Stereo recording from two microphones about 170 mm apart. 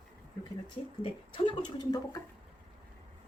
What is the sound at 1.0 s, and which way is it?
Speech, 25° left (ahead or behind).